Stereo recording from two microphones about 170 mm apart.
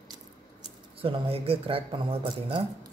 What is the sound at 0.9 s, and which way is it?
Speech, 35° right (ahead or behind).